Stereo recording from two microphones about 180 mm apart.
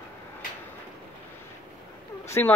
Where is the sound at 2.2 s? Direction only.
15° left (ahead or behind).